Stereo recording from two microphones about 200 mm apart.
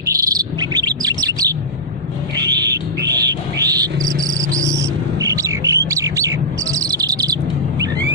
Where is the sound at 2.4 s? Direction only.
20° right (ahead or behind).